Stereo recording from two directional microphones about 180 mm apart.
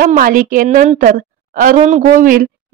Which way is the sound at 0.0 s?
50° right (ahead or behind).